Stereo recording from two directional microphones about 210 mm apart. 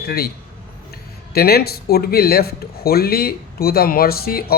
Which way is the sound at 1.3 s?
45° left (ahead or behind).